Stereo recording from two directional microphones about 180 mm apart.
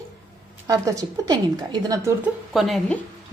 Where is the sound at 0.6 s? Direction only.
20° right (ahead or behind).